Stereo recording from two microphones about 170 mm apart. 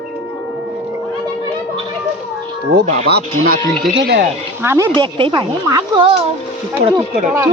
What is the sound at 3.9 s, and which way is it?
Speech, 75° right (ahead or behind).